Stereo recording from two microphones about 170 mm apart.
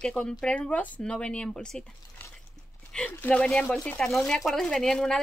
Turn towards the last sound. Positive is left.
turn(degrees=5)  # may be behind; listen again after turning